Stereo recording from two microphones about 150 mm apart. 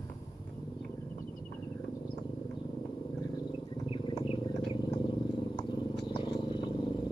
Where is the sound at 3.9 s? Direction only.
35° left (ahead or behind).